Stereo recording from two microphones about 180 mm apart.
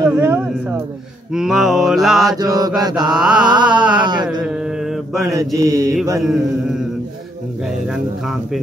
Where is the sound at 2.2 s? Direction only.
20° right (ahead or behind).